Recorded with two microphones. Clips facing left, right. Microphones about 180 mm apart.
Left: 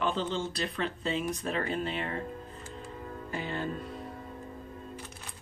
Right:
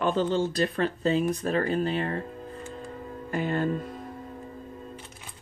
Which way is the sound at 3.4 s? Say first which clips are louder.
Right 8 dB; 50° right (ahead or behind).